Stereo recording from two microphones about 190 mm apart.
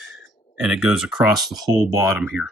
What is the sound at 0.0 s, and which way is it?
Speech, centre (ahead or behind).